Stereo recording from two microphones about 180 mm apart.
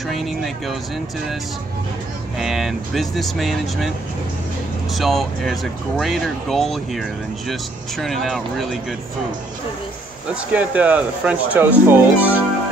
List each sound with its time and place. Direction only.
0.1 s speech: centre (ahead or behind)
2.3 s speech: centre (ahead or behind)
4.9 s speech: centre (ahead or behind)
10.3 s speech: 10° right (ahead or behind)